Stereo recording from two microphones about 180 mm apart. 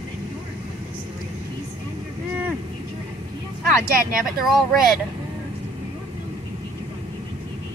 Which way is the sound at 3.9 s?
55° right (ahead or behind).